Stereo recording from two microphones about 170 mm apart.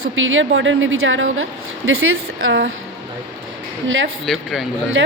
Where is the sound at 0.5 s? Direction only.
90° right.